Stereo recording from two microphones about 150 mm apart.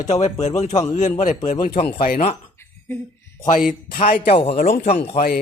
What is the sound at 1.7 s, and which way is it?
Speech, 35° left (ahead or behind).